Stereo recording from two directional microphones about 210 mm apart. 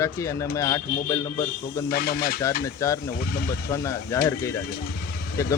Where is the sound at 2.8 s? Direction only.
15° left (ahead or behind).